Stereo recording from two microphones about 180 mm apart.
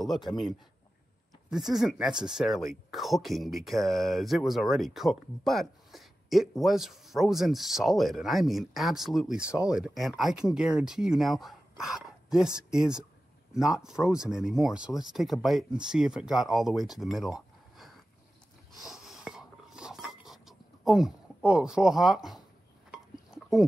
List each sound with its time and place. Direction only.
1.5 s speech: centre (ahead or behind)
18.8 s dishes: centre (ahead or behind)